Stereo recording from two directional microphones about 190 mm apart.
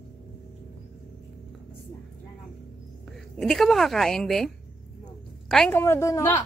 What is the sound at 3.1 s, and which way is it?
A woman's voice, centre (ahead or behind).